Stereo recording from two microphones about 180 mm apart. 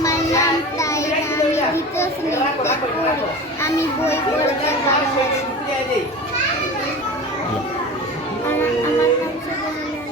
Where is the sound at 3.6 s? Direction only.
15° left (ahead or behind).